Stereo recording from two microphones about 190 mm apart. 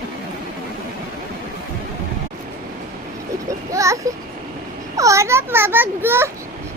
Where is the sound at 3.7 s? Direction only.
15° right (ahead or behind).